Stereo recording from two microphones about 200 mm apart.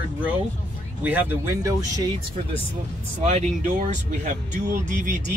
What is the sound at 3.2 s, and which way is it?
Speech, 35° right (ahead or behind).